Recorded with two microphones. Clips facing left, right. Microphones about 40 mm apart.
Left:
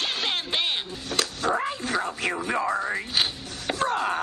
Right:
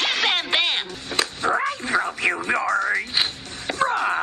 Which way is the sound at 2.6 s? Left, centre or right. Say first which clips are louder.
Right 5 dB; right.